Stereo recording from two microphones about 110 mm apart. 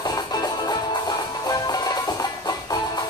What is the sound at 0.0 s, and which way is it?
Music, 35° left (ahead or behind).